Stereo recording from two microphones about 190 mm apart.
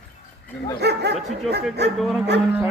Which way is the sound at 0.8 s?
60° right (ahead or behind).